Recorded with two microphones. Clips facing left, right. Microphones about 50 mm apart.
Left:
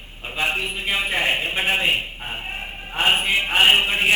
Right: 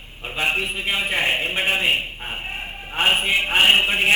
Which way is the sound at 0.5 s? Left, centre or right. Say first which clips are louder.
Right 1 dB; centre.